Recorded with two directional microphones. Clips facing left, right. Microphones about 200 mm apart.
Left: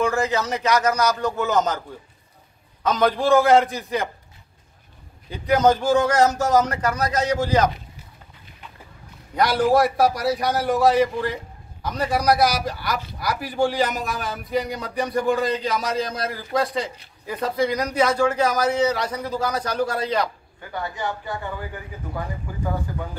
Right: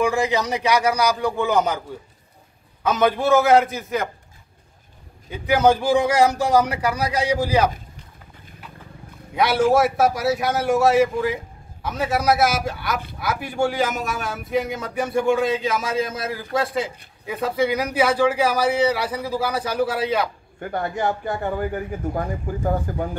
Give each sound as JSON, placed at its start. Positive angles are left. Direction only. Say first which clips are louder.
{"t": 0.0, "sound": "speech", "louder": "right 1 dB", "side_deg": -15}
{"t": 2.8, "sound": "speech", "louder": "right 1 dB", "side_deg": -5}
{"t": 5.3, "sound": "speech", "louder": "right 1 dB", "side_deg": -10}
{"t": 9.3, "sound": "speech", "louder": "right 1 dB", "side_deg": 0}
{"t": 20.6, "sound": "speech", "louder": "right 5 dB", "side_deg": -55}